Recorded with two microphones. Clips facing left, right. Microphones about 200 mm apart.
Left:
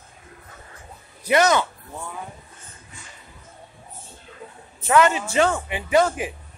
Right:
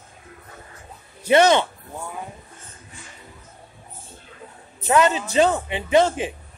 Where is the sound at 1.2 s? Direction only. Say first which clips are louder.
Right 3 dB; 25° right (ahead or behind).